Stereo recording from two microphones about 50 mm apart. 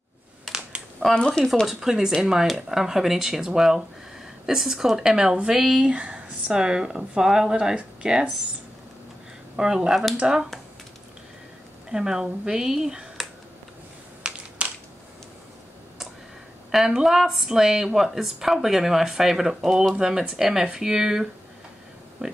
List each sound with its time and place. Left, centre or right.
0.5 s a sound: centre
0.9 s speech: centre
1.7 s a woman's voice: centre
5.9 s a sound: right
6.5 s a woman's voice: centre
9.6 s a woman's voice: centre
11.9 s a woman's voice: centre
14.2 s a sound: centre
16.7 s a woman's voice: centre
22.2 s speech: right